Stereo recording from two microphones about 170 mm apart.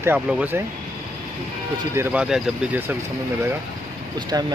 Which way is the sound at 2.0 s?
10° right (ahead or behind).